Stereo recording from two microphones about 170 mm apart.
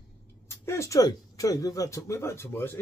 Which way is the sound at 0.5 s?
15° left (ahead or behind).